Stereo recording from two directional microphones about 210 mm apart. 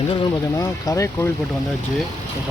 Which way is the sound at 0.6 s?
15° left (ahead or behind).